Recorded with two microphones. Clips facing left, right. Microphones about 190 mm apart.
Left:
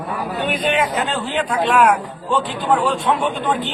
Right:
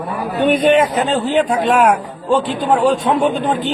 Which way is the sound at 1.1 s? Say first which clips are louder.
Right 6 dB; 40° right (ahead or behind).